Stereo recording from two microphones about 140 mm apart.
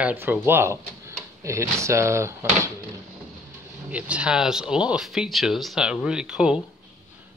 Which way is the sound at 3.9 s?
10° right (ahead or behind).